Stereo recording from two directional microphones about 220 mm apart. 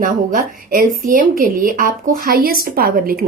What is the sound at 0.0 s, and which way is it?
A woman's voice, 40° right (ahead or behind).